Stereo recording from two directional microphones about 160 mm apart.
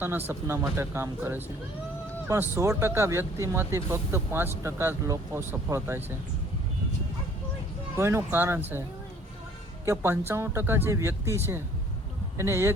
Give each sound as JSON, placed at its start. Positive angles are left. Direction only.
{"t": 0.0, "sound": "speech", "side_deg": -10}
{"t": 7.9, "sound": "speech", "side_deg": -15}
{"t": 9.8, "sound": "speech", "side_deg": -15}